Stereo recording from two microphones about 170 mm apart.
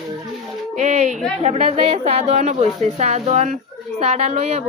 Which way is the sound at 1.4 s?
40° right (ahead or behind).